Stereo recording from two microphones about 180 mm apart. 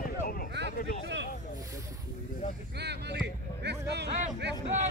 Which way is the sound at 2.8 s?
70° right (ahead or behind).